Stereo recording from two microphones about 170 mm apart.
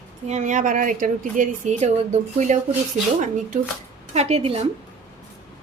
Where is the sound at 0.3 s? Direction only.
45° right (ahead or behind).